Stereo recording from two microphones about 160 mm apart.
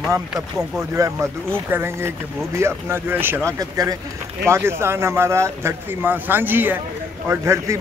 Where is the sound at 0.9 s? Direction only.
20° right (ahead or behind).